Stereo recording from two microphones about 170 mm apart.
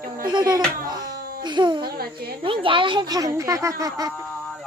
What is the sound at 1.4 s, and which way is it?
Speech, 25° right (ahead or behind).